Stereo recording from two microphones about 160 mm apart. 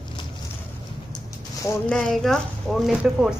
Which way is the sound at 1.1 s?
20° left (ahead or behind).